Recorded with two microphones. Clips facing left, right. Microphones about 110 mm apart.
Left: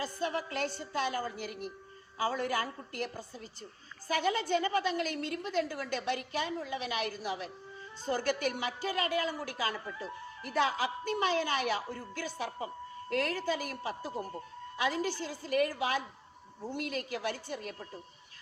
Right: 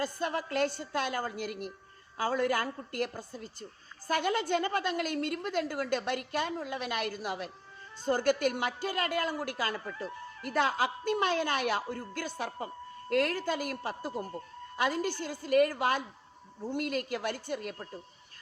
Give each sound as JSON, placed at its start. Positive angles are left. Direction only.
{"t": 0.0, "sound": "a woman's voice", "side_deg": -55}